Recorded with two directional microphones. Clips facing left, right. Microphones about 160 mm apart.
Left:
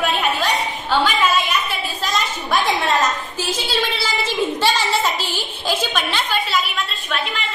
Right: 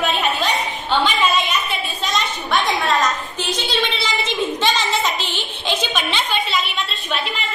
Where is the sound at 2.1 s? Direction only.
5° left (ahead or behind).